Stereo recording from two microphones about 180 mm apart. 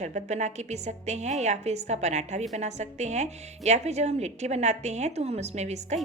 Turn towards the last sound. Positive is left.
turn(degrees=-40)  # may be behind; listen again after turning